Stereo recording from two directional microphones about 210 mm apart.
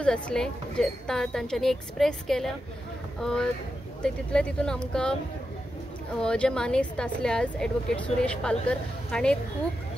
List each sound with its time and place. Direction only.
0.0 s speech: 5° left (ahead or behind)
6.1 s speech: 5° left (ahead or behind)